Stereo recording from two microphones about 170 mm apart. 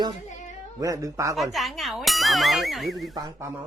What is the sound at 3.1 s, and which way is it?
Speech, 20° right (ahead or behind).